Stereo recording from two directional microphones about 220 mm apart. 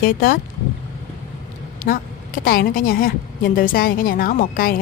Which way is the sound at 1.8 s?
40° left (ahead or behind).